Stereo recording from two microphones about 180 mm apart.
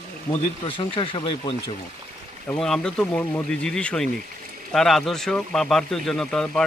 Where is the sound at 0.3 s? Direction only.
30° left (ahead or behind).